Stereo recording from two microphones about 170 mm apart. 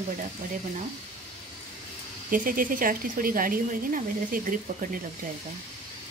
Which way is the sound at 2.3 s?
55° right (ahead or behind).